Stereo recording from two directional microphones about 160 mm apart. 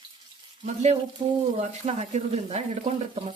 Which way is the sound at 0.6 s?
45° right (ahead or behind).